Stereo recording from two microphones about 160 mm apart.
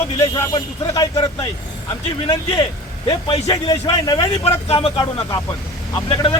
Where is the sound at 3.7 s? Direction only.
25° left (ahead or behind).